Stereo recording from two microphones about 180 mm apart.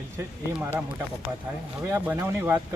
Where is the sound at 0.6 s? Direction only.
10° right (ahead or behind).